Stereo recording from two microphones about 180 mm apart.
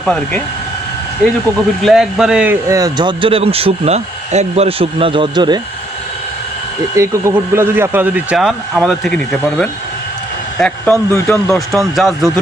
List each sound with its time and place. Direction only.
0.0 s speech: 5° left (ahead or behind)
1.8 s a man's voice: 5° right (ahead or behind); by 5.5 s 25° right (ahead or behind)
6.9 s a man's voice: 15° right (ahead or behind); by 11.5 s 10° left (ahead or behind)
11.5 s speech: centre (ahead or behind)